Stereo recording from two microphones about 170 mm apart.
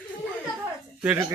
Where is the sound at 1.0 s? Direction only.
10° right (ahead or behind).